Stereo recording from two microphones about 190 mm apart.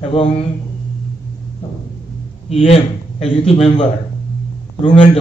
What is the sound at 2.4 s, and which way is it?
A man's voice, 35° left (ahead or behind).